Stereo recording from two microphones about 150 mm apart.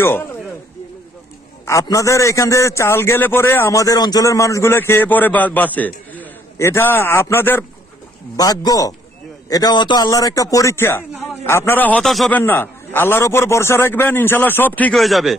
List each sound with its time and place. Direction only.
1.7 s a man's voice: 20° left (ahead or behind)
8.4 s a man's voice: 25° left (ahead or behind); by 12.3 s centre (ahead or behind)
12.3 s a man's voice: 10° left (ahead or behind)
15.0 s speech: centre (ahead or behind)